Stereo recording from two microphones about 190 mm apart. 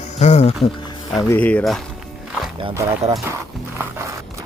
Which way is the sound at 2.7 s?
15° right (ahead or behind).